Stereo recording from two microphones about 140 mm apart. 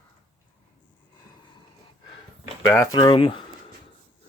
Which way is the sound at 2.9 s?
35° left (ahead or behind).